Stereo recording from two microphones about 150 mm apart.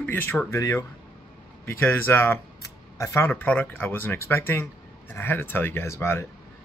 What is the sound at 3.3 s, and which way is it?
Speech, 10° left (ahead or behind).